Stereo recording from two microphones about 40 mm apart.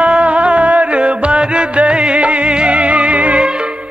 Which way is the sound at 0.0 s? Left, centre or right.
Right.